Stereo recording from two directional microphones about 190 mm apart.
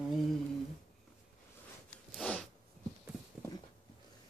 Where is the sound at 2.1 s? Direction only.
5° left (ahead or behind).